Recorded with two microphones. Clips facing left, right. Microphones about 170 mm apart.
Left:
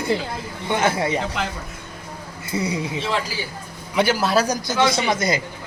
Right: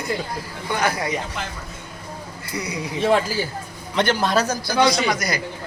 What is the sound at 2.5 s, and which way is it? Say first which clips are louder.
Speech: left 4 dB; 25° left (ahead or behind).